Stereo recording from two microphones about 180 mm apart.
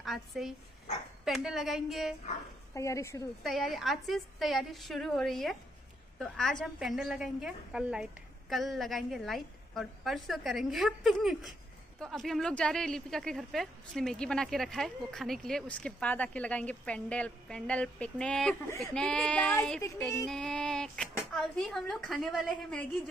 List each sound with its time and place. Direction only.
0.0 s a woman's voice: centre (ahead or behind)
2.7 s speech: 15° left (ahead or behind)
3.4 s a woman's voice: centre (ahead or behind)